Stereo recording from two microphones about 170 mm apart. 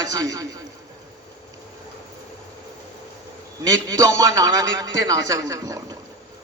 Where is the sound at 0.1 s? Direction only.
20° right (ahead or behind).